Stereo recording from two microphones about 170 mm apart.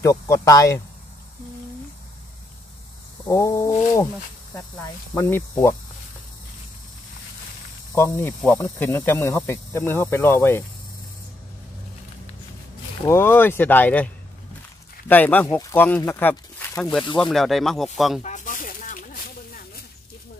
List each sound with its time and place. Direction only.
0.0 s speech: 20° left (ahead or behind)
3.3 s speech: 20° left (ahead or behind)
5.1 s speech: 20° left (ahead or behind)
7.9 s speech: 15° left (ahead or behind)
13.0 s speech: 15° left (ahead or behind)
17.2 s speech: centre (ahead or behind)
18.2 s snake: 50° left (ahead or behind)